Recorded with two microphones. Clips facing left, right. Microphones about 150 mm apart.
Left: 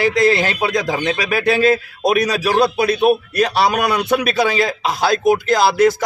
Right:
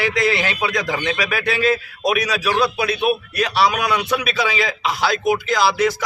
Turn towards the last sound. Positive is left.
turn(degrees=50)  # may be behind; listen again after turning